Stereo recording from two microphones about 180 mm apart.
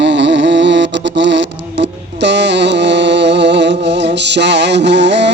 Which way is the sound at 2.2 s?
75° right (ahead or behind).